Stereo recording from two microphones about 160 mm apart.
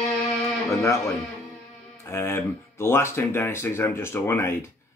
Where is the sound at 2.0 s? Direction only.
15° left (ahead or behind).